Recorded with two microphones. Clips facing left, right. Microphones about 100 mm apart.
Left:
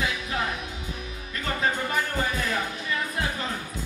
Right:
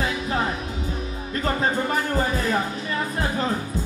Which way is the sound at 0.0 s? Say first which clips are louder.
Right 4 dB; 35° right (ahead or behind).